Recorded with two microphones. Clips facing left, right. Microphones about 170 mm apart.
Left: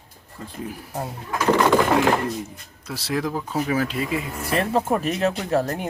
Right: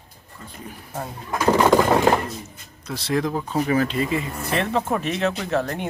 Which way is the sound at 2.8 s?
5° left (ahead or behind).